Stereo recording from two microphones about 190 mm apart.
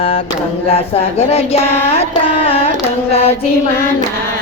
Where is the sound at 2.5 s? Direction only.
30° left (ahead or behind).